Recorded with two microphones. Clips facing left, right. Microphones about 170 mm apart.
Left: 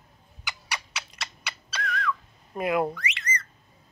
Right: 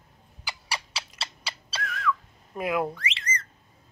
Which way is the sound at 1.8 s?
5° right (ahead or behind).